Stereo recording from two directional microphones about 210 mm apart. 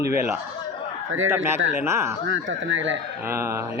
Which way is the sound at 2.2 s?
65° right (ahead or behind).